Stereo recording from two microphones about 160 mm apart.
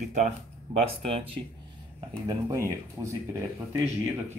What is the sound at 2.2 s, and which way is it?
Speech, 20° right (ahead or behind).